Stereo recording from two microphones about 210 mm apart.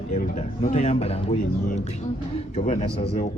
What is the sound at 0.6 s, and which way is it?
Speech, 30° left (ahead or behind).